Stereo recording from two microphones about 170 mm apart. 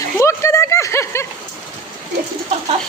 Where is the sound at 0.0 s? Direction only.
15° left (ahead or behind).